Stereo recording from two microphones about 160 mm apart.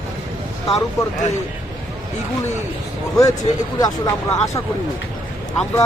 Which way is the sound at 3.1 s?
25° left (ahead or behind).